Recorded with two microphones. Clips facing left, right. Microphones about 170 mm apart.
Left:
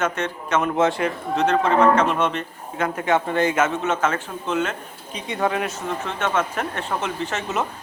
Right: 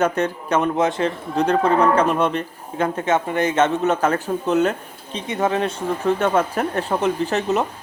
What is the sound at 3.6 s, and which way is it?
Speech, 35° right (ahead or behind).